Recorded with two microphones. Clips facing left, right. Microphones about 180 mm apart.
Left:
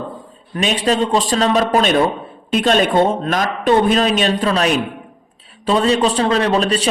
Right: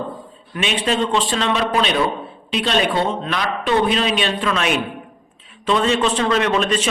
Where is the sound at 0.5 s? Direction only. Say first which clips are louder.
Left 3 dB; 40° left (ahead or behind).